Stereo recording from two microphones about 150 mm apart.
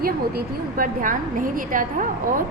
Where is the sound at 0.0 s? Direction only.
75° right (ahead or behind).